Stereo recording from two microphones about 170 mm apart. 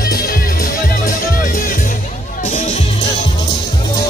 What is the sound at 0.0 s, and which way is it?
Music, 60° left (ahead or behind).